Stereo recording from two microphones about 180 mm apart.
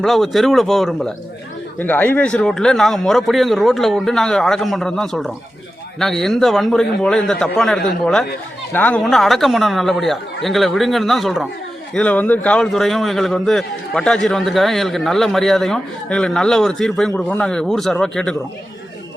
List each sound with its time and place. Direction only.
0.0 s a man's voice: centre (ahead or behind)